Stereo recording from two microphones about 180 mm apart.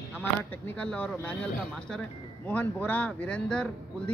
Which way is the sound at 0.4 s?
10° left (ahead or behind).